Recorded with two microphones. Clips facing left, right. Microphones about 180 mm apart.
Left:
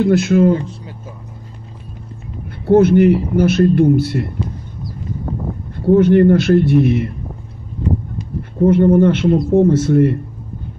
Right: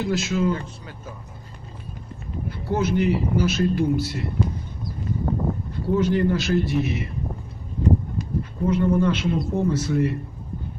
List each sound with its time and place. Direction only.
0.0 s speech: 55° left (ahead or behind)
2.6 s speech: 60° left (ahead or behind)
5.9 s speech: 60° left (ahead or behind)
8.6 s speech: 55° left (ahead or behind)